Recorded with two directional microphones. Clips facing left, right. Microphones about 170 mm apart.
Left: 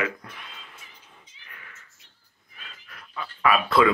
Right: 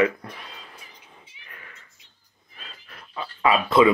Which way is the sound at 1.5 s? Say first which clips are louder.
Right 2 dB; 35° right (ahead or behind).